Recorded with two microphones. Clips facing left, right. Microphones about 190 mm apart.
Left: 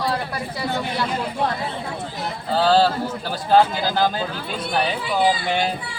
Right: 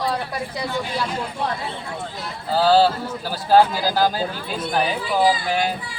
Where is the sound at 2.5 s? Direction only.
5° right (ahead or behind).